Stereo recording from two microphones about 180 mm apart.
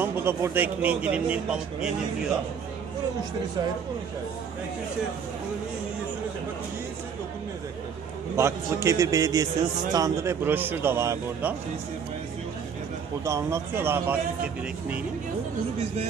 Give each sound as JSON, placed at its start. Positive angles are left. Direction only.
{"t": 0.0, "sound": "a man's voice", "side_deg": -15}
{"t": 8.4, "sound": "a man's voice", "side_deg": -15}
{"t": 13.2, "sound": "a man's voice", "side_deg": -15}